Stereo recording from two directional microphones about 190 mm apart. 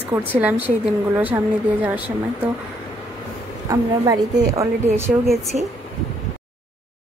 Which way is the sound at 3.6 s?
20° right (ahead or behind).